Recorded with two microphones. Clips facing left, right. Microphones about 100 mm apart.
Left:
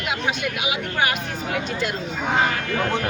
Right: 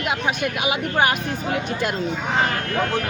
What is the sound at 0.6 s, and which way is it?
Speech, 40° right (ahead or behind).